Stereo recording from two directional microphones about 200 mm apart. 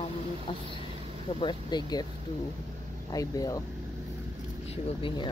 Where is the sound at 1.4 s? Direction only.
20° left (ahead or behind).